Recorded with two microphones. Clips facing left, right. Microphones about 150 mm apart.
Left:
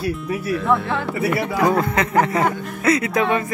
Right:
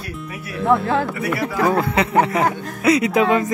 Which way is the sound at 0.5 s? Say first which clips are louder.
Right 3 dB; 20° right (ahead or behind).